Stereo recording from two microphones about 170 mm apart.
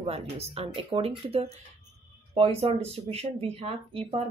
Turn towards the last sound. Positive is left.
turn(degrees=-35)  # may be behind; listen again after turning